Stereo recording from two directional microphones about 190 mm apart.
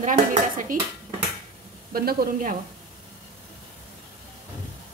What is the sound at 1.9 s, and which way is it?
Dishes, 50° right (ahead or behind).